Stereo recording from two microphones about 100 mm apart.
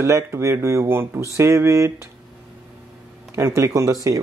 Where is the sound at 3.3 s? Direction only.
30° right (ahead or behind).